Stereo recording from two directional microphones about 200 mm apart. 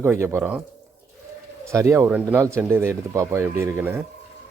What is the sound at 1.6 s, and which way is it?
Speech, 15° right (ahead or behind).